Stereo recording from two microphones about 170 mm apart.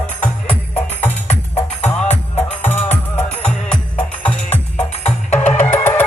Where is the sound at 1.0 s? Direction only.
40° left (ahead or behind).